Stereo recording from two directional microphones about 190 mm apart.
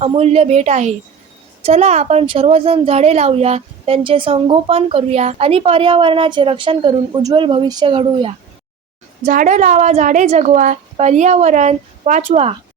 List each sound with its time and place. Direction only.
0.0 s speech: 35° right (ahead or behind)
9.2 s speech: 45° right (ahead or behind)